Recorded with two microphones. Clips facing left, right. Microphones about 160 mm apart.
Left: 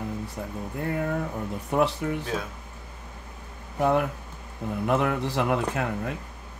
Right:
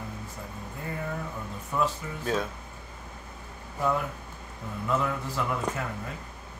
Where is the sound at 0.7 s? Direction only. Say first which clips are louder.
Left 7 dB; 65° left (ahead or behind).